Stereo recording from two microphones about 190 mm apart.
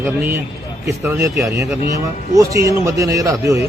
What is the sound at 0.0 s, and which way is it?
A man's voice, 10° right (ahead or behind).